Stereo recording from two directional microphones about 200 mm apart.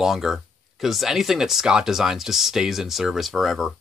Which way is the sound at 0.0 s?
Centre (ahead or behind).